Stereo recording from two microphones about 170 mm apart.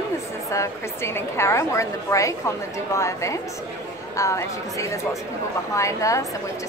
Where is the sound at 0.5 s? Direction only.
15° left (ahead or behind).